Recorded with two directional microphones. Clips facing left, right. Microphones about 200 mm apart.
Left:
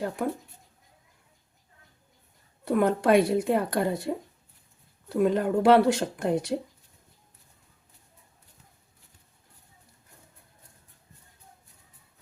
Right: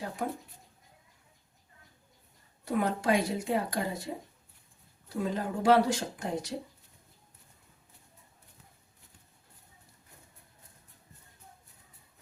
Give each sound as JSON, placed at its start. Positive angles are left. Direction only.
{"t": 2.6, "sound": "speech", "side_deg": 55}